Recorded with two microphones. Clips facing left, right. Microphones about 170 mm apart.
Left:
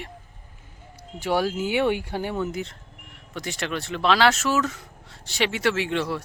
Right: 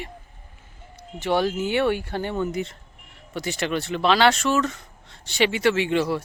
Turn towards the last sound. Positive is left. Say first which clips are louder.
# right 4 dB
turn(degrees=0)  # may be behind; listen again after turning